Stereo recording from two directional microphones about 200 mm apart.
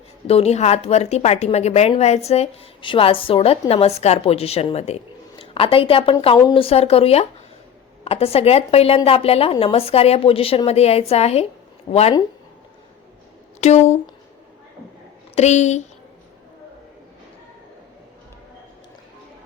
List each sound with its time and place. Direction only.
0.3 s a woman's voice: 30° left (ahead or behind)
13.6 s a woman's voice: 35° left (ahead or behind)
15.4 s a woman's voice: 35° left (ahead or behind)